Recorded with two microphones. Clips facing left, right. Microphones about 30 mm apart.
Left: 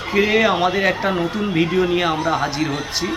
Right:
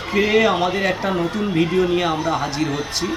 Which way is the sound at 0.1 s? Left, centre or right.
Centre.